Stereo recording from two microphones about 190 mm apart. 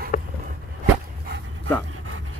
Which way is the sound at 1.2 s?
65° right (ahead or behind).